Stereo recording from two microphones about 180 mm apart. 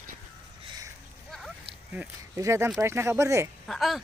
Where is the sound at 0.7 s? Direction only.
20° right (ahead or behind).